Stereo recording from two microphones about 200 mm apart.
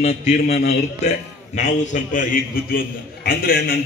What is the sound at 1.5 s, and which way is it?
A man's voice, 35° left (ahead or behind).